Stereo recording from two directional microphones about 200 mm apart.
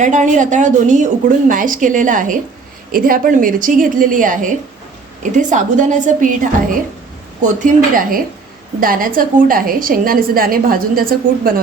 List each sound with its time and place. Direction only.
0.0 s a woman's voice: 35° right (ahead or behind)